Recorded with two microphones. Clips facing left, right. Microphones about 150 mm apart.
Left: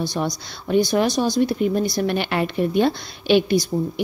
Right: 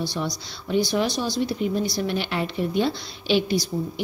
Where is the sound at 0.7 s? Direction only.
50° left (ahead or behind).